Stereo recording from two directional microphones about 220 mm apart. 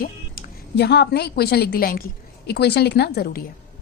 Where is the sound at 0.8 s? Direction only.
50° left (ahead or behind).